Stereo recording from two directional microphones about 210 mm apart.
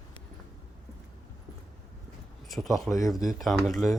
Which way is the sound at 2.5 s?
Centre (ahead or behind).